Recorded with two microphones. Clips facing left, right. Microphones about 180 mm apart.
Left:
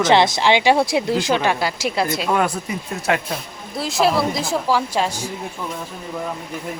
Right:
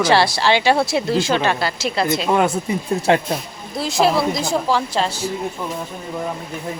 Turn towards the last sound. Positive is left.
turn(degrees=10)  # may be behind; listen again after turning